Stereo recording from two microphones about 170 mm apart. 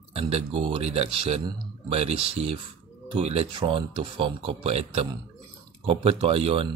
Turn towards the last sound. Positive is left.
turn(degrees=-35)  # may be behind; listen again after turning